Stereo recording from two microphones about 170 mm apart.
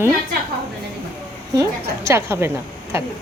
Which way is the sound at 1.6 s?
20° right (ahead or behind).